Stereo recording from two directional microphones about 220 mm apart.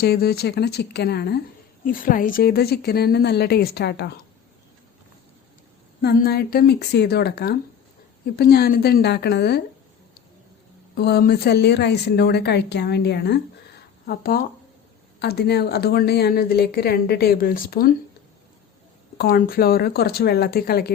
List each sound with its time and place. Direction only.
0.0 s a woman's voice: 45° left (ahead or behind)
6.0 s a woman's voice: 45° left (ahead or behind)
10.9 s a woman's voice: 45° left (ahead or behind)
19.1 s a woman's voice: 40° left (ahead or behind)